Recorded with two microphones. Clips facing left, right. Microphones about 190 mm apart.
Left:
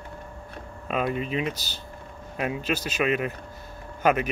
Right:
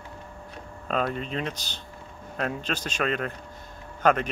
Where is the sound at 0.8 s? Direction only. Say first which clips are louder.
Left 1 dB; 5° left (ahead or behind).